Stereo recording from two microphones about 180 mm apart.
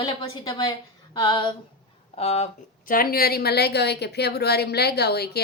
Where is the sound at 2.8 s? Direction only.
55° left (ahead or behind).